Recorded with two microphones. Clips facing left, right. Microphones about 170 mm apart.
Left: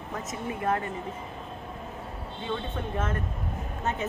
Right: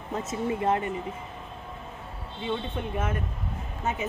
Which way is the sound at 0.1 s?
30° right (ahead or behind).